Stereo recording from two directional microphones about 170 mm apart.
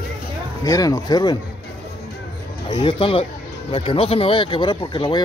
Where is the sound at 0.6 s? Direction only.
20° left (ahead or behind).